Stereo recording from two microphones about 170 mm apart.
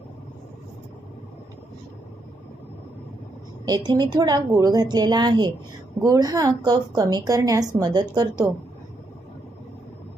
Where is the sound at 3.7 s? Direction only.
25° right (ahead or behind).